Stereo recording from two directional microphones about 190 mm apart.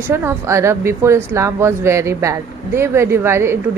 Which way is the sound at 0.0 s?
15° right (ahead or behind).